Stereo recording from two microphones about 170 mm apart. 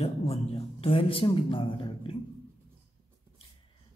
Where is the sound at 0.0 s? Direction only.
35° left (ahead or behind).